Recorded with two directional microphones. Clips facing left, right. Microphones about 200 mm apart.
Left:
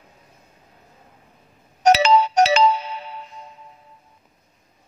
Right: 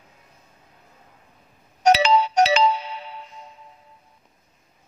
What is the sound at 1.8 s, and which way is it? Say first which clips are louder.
Ringtone: left 2 dB; 45° left (ahead or behind).